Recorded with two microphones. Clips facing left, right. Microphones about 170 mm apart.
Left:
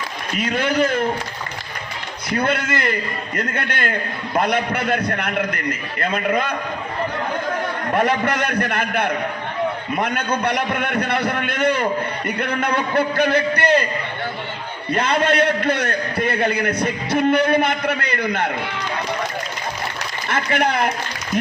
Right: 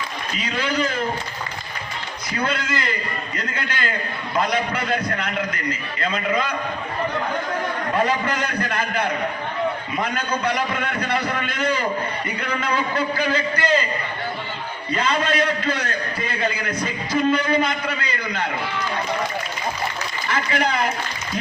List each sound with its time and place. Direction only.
0.3 s a man's voice: 55° left (ahead or behind)
2.3 s a man's voice: 55° left (ahead or behind)
7.9 s a man's voice: 60° left (ahead or behind)
14.9 s a man's voice: 60° left (ahead or behind)
20.2 s a man's voice: 60° left (ahead or behind)